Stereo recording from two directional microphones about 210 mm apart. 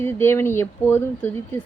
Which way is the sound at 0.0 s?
10° left (ahead or behind).